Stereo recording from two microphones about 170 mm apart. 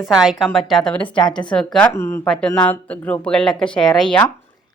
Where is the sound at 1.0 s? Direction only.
30° left (ahead or behind).